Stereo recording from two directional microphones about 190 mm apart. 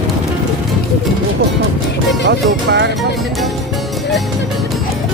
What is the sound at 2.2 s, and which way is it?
Speech, 65° right (ahead or behind).